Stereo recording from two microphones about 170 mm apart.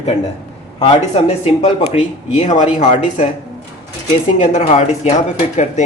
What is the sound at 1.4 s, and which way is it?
Speech, 40° left (ahead or behind).